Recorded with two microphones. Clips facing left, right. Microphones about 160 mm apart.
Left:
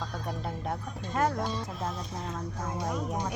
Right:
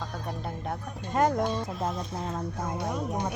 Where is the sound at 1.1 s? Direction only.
20° right (ahead or behind).